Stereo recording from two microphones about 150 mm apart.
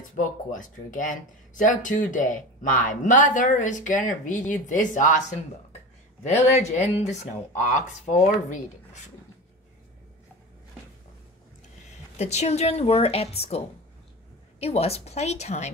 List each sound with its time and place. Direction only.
0.1 s speech: 60° left (ahead or behind)
6.2 s a woman's voice: 50° left (ahead or behind)
12.2 s a woman's voice: 50° left (ahead or behind)